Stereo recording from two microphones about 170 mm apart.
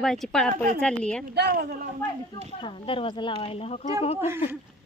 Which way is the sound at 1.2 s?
65° right (ahead or behind).